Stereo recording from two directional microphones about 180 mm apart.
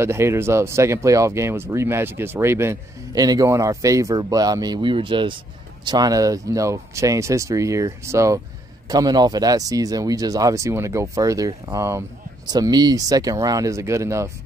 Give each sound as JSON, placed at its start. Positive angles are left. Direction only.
{"t": 0.0, "sound": "speech", "side_deg": -15}